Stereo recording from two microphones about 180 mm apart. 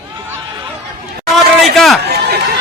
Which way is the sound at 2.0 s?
65° right (ahead or behind).